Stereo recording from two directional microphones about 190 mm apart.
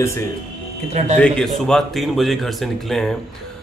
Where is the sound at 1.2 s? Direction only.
5° left (ahead or behind).